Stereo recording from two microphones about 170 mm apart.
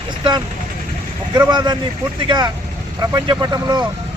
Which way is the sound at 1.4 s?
25° right (ahead or behind).